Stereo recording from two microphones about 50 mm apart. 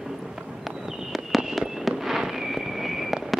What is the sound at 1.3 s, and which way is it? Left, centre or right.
Fireworks, centre.